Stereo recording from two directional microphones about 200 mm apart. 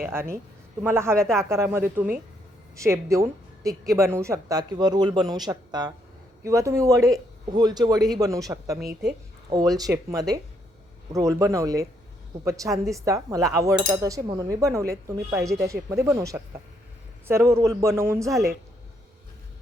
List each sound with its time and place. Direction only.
0.0 s a woman's voice: 10° right (ahead or behind)
1.1 s speech: 5° left (ahead or behind)
1.4 s a woman's voice: 15° right (ahead or behind)